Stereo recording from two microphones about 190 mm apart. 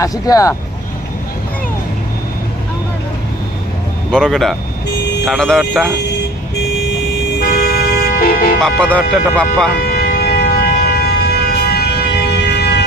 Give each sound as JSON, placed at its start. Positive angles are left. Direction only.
{"t": 0.0, "sound": "speech", "side_deg": 20}
{"t": 4.1, "sound": "speech", "side_deg": 5}
{"t": 7.3, "sound": "vehicle", "side_deg": 55}
{"t": 8.6, "sound": "speech", "side_deg": 5}
{"t": 9.7, "sound": "siren", "side_deg": 55}